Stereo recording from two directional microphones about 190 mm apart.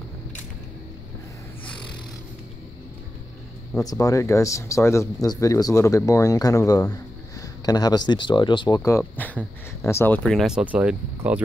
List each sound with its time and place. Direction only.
3.7 s speech: 20° left (ahead or behind); by 11.4 s 10° right (ahead or behind)